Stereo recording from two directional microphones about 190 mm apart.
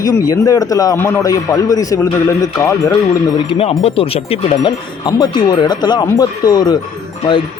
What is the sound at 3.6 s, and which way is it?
Speech, 30° left (ahead or behind).